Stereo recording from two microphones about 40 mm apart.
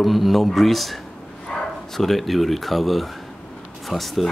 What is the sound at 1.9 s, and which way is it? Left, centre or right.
A man's voice, centre.